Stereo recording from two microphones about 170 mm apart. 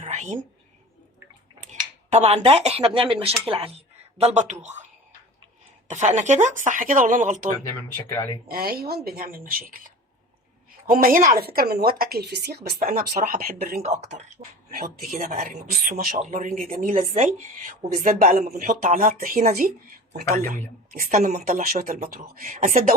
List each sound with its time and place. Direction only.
0.0 s whispering: 45° right (ahead or behind)
1.6 s speech: 40° right (ahead or behind)
5.9 s speech: 45° right (ahead or behind)
8.1 s speech: 15° left (ahead or behind)
8.4 s a woman's voice: 60° right (ahead or behind)
13.8 s speech: 40° right (ahead or behind)
15.2 s speech: 55° right (ahead or behind)
20.9 s a woman's voice: 55° right (ahead or behind)